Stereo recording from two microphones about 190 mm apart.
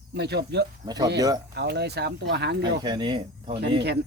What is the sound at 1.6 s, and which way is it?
Speech, 60° right (ahead or behind).